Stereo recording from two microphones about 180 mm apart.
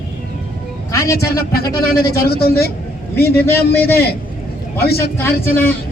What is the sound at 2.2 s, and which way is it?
Speech, 60° left (ahead or behind).